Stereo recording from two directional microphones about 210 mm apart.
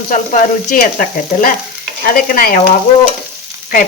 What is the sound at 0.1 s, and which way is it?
Frying, 40° left (ahead or behind).